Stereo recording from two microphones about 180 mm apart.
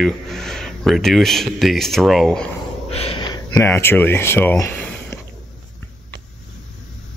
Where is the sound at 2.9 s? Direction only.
30° left (ahead or behind); by 5.1 s 10° left (ahead or behind).